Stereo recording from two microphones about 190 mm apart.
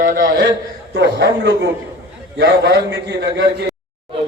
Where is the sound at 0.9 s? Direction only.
65° right (ahead or behind).